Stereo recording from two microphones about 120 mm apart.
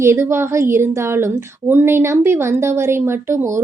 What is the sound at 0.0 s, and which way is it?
A woman's voice, 20° right (ahead or behind).